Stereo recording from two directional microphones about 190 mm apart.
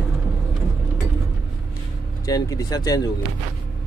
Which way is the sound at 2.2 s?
20° left (ahead or behind).